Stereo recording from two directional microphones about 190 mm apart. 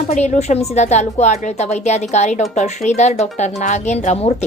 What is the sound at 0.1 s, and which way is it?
Speech, 40° left (ahead or behind).